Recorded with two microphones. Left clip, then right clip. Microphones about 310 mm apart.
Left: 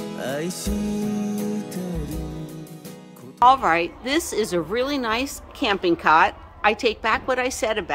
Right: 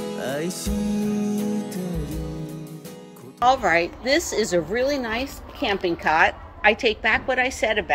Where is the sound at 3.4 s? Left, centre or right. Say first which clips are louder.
Left 2 dB; centre.